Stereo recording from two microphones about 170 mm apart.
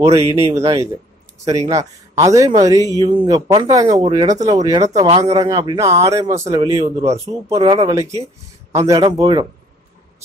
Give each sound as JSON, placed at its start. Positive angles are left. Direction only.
{"t": 0.0, "sound": "a man's voice", "side_deg": -20}
{"t": 7.5, "sound": "a man's voice", "side_deg": -30}